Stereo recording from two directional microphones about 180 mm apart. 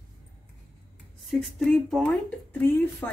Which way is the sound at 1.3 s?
Centre (ahead or behind).